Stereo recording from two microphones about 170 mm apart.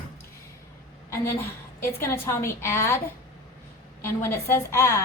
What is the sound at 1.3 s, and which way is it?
A woman's voice, 15° left (ahead or behind).